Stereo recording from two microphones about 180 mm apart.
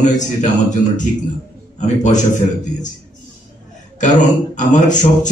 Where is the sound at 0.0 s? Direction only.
45° left (ahead or behind).